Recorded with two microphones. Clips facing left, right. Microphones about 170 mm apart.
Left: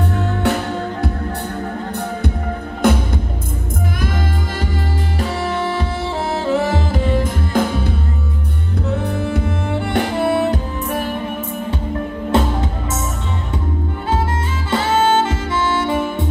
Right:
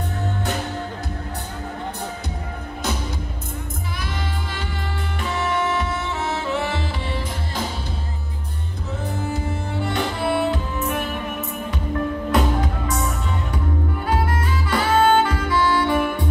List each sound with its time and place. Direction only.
2.8 s music: 55° left (ahead or behind)
5.2 s music: 35° left (ahead or behind); by 7.9 s 55° left (ahead or behind)
8.9 s music: 65° left (ahead or behind)
9.8 s music: 50° left (ahead or behind)
12.3 s music: 25° left (ahead or behind)
14.7 s music: 25° left (ahead or behind)